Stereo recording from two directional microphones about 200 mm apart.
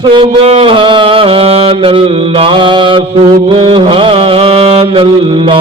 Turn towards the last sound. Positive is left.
turn(degrees=-30)  # may be behind; listen again after turning